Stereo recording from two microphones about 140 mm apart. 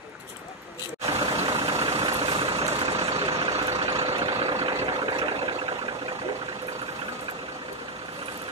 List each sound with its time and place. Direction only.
1.2 s vehicle: 35° right (ahead or behind)